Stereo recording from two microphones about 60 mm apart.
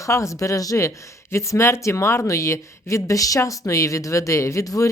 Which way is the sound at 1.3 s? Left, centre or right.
Left.